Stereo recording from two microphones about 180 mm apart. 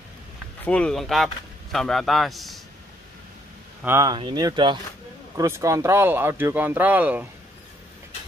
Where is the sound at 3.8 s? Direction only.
15° right (ahead or behind).